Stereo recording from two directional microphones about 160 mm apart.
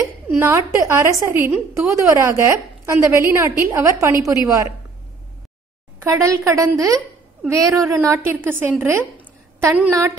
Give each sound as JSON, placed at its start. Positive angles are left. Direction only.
{"t": 0.4, "sound": "a woman's voice", "side_deg": -20}
{"t": 5.9, "sound": "a woman's voice", "side_deg": -20}